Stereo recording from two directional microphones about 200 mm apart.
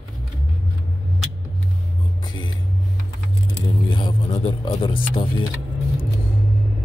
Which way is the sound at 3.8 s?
25° left (ahead or behind).